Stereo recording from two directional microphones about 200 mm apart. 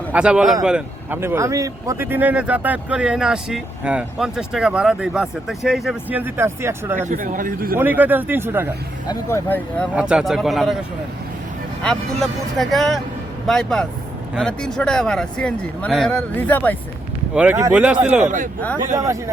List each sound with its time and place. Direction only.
0.1 s speech: 5° right (ahead or behind)
7.1 s a man's voice: 40° right (ahead or behind)
7.8 s speech: 10° right (ahead or behind)
9.0 s speech: 15° left (ahead or behind)
9.9 s speech: 5° right (ahead or behind)
11.8 s speech: centre (ahead or behind)
17.3 s speech: 10° right (ahead or behind)